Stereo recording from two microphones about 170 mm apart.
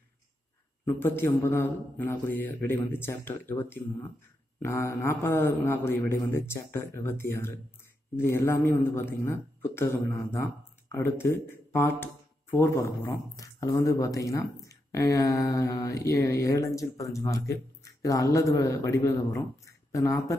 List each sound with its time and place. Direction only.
0.8 s a man's voice: 15° left (ahead or behind)